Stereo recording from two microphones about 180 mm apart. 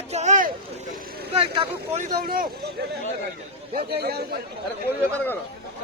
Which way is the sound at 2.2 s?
55° right (ahead or behind).